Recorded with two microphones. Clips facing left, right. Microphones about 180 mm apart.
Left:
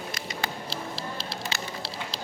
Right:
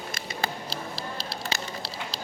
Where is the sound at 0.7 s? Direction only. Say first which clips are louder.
Even; 40° right (ahead or behind).